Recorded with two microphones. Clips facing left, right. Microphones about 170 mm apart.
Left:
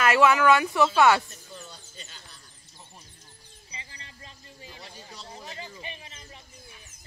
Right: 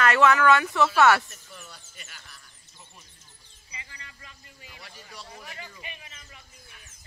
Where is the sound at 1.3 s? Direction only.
30° left (ahead or behind).